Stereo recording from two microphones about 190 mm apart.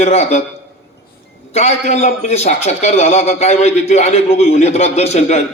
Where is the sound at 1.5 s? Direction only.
35° left (ahead or behind).